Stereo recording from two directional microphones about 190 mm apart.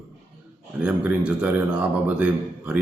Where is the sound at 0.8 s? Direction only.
5° right (ahead or behind).